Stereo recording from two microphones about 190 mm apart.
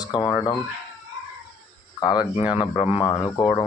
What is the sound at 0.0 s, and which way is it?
Speech, 25° left (ahead or behind).